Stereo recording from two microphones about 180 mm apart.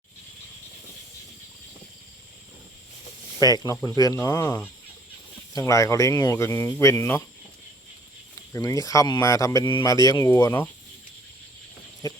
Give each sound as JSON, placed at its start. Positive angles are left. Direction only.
{"t": 3.4, "sound": "speech", "side_deg": 20}
{"t": 8.5, "sound": "speech", "side_deg": 20}